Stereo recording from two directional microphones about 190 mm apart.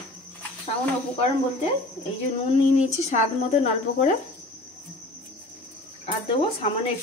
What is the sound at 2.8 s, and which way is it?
Speech, 35° left (ahead or behind).